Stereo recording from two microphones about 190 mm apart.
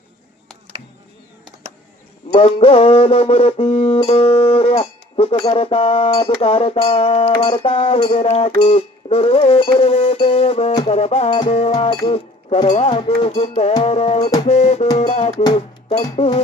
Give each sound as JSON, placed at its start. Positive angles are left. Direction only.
{"t": 2.3, "sound": "music", "side_deg": 30}
{"t": 15.4, "sound": "speech", "side_deg": 30}
{"t": 16.0, "sound": "music", "side_deg": 25}